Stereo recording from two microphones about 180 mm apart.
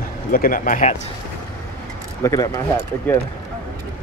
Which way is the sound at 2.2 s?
20° left (ahead or behind).